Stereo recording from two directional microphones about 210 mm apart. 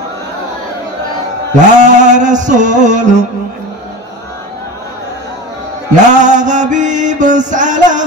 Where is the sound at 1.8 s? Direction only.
35° right (ahead or behind).